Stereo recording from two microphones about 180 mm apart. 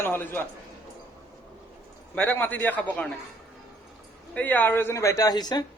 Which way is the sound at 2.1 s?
10° left (ahead or behind).